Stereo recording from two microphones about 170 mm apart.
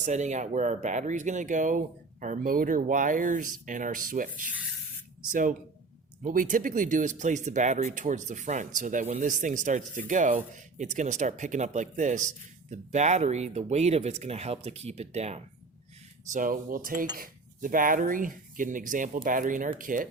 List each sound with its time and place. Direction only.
0.0 s speech: 45° right (ahead or behind)
16.3 s speech: 50° right (ahead or behind)